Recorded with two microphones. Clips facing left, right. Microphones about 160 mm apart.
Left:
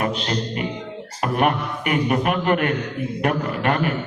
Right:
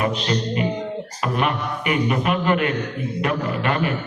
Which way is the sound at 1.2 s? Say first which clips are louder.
Left 3 dB; 45° left (ahead or behind).